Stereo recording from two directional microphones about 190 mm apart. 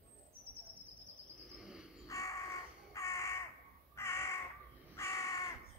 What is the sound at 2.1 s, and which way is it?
Crow, 15° left (ahead or behind).